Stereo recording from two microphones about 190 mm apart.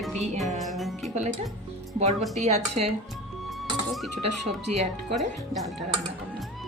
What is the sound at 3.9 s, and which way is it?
Speech, centre (ahead or behind).